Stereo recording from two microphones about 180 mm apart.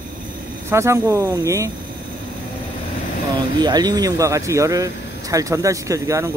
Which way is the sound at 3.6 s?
20° right (ahead or behind).